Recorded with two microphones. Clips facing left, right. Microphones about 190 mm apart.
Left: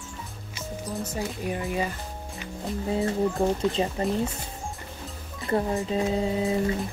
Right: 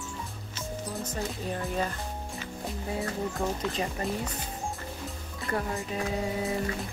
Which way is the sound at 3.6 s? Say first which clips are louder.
Left 6 dB; 25° left (ahead or behind).